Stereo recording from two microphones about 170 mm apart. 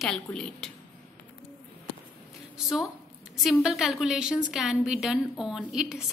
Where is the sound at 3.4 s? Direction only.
Centre (ahead or behind).